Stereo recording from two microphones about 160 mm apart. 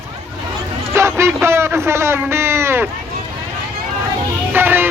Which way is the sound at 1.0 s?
15° right (ahead or behind).